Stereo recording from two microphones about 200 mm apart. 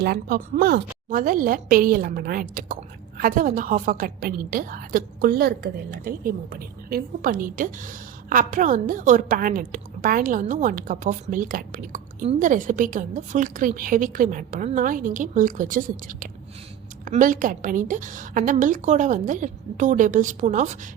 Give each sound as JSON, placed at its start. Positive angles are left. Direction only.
{"t": 0.0, "sound": "a woman's voice", "side_deg": -50}